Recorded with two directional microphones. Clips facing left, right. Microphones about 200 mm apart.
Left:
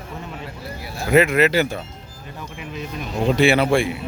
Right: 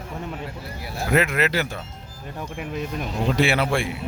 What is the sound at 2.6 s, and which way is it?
Speech, 50° right (ahead or behind).